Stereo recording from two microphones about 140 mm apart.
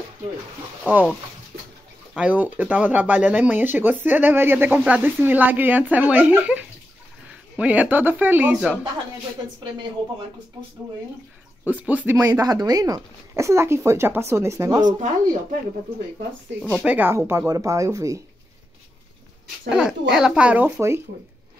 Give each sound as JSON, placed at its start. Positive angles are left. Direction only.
{"t": 0.8, "sound": "speech", "side_deg": -10}
{"t": 2.1, "sound": "speech", "side_deg": -10}
{"t": 11.6, "sound": "speech", "side_deg": -10}
{"t": 12.3, "sound": "speech", "side_deg": -25}
{"t": 15.0, "sound": "speech", "side_deg": -65}
{"t": 16.8, "sound": "speech", "side_deg": -10}
{"t": 19.7, "sound": "speech", "side_deg": -5}